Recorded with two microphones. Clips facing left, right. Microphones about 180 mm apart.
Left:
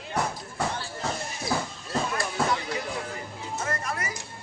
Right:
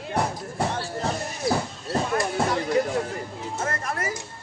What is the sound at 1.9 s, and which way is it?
Music, 45° right (ahead or behind).